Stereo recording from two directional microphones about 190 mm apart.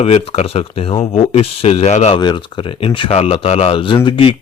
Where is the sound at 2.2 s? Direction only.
25° left (ahead or behind).